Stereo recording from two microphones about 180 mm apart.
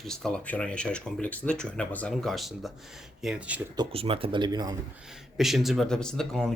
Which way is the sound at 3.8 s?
30° right (ahead or behind).